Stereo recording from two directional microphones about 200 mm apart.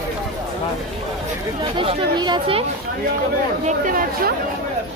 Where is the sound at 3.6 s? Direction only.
45° right (ahead or behind).